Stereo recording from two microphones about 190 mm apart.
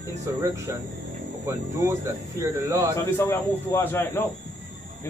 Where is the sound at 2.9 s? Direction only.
15° left (ahead or behind).